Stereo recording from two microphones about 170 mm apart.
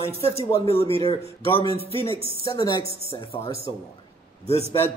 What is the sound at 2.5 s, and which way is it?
Speech, 25° left (ahead or behind).